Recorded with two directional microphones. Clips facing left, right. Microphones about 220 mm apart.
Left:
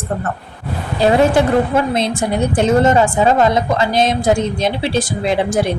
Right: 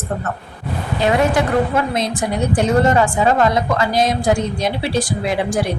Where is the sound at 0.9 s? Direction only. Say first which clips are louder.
Left 4 dB; 30° left (ahead or behind).